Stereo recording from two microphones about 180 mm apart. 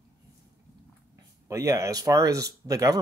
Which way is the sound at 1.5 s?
15° right (ahead or behind).